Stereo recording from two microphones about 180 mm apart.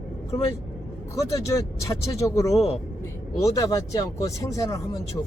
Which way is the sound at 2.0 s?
15° left (ahead or behind).